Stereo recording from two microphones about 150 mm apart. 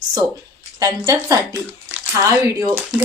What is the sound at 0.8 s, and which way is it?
A woman's voice, 25° right (ahead or behind).